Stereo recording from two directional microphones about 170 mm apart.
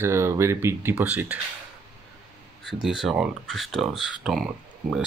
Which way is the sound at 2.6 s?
Centre (ahead or behind).